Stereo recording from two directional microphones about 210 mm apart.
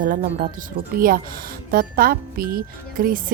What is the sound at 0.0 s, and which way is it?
Speech, 40° right (ahead or behind).